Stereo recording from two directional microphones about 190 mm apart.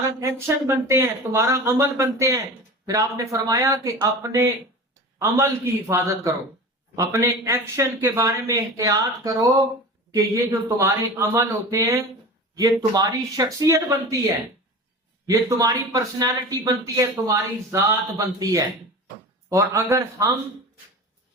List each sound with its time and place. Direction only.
0.2 s speech: 15° right (ahead or behind)
15.3 s speech: 15° right (ahead or behind)